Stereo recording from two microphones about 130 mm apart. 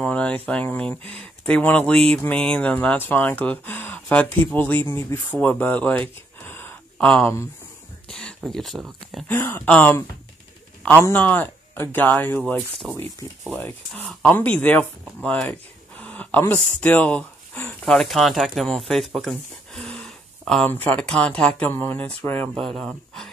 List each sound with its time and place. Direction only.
0.0 s speech: 10° left (ahead or behind)
9.3 s speech: 15° left (ahead or behind)
11.1 s speech: 15° left (ahead or behind)
12.5 s speech: centre (ahead or behind)
13.5 s speech: 15° left (ahead or behind)
17.9 s speech: centre (ahead or behind)
22.6 s speech: centre (ahead or behind)